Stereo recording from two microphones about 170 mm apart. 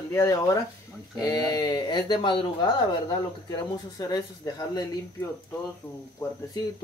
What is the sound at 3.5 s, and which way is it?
A man's voice, 25° left (ahead or behind).